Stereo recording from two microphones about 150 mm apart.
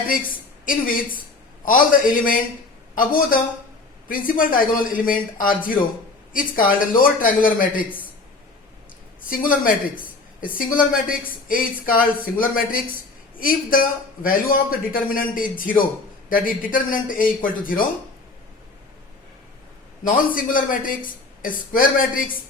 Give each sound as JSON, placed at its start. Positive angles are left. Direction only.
{"t": 0.6, "sound": "a man's voice", "side_deg": 65}
{"t": 9.3, "sound": "a man's voice", "side_deg": 70}
{"t": 20.3, "sound": "a man's voice", "side_deg": 65}